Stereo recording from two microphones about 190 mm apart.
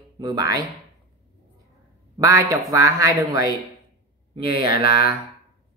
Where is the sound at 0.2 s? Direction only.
20° right (ahead or behind).